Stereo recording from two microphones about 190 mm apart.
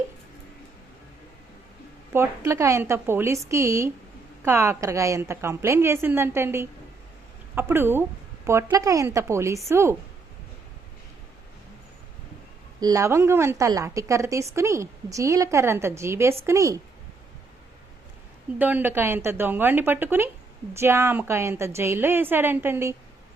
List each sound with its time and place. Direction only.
2.1 s a woman's voice: 15° right (ahead or behind)
12.8 s a woman's voice: 15° right (ahead or behind)
18.6 s a woman's voice: 10° right (ahead or behind)